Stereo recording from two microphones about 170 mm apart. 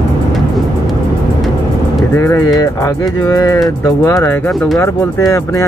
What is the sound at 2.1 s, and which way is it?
Speech, 15° left (ahead or behind).